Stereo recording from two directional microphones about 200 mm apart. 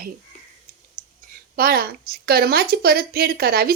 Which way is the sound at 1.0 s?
45° right (ahead or behind).